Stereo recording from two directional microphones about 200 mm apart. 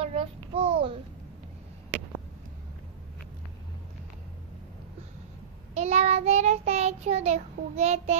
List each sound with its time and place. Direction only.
0.0 s babbling: 30° right (ahead or behind)
5.8 s child singing: 35° right (ahead or behind)